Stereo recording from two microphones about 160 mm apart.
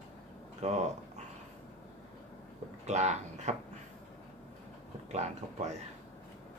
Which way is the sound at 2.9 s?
45° right (ahead or behind).